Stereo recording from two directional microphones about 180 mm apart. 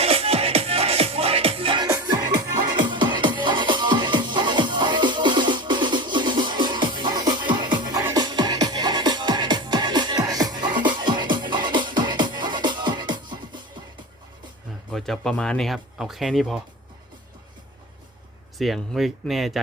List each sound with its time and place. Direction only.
0.0 s music: 35° right (ahead or behind)
14.8 s speech: centre (ahead or behind)
18.6 s speech: centre (ahead or behind)